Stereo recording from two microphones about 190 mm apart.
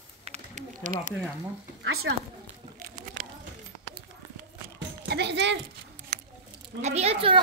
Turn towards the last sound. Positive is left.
turn(degrees=-30)  # may be behind; listen again after turning